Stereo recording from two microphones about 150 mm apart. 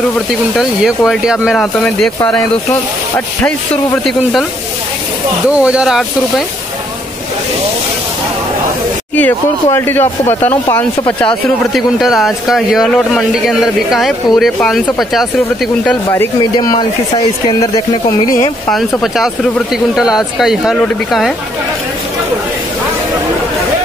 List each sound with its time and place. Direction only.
0.6 s speech: 5° right (ahead or behind)
3.4 s speech: 5° left (ahead or behind)
5.5 s speech: 5° right (ahead or behind)
9.1 s speech: 15° left (ahead or behind)
11.7 s speech: centre (ahead or behind)
16.5 s speech: 30° left (ahead or behind)
18.7 s speech: centre (ahead or behind)